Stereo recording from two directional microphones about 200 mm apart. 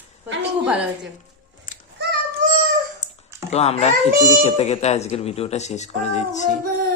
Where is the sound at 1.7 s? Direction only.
40° left (ahead or behind).